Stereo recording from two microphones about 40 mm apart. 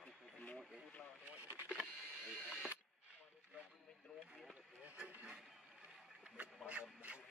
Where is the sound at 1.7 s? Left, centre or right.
Right.